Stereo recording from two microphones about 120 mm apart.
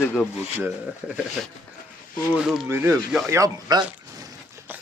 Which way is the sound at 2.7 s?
20° right (ahead or behind).